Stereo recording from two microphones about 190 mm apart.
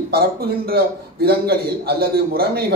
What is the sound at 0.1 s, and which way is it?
Speech, 55° right (ahead or behind).